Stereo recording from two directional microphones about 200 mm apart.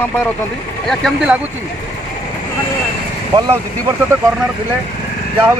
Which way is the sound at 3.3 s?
20° right (ahead or behind).